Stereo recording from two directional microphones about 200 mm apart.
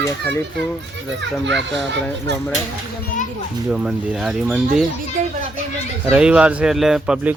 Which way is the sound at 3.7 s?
5° right (ahead or behind).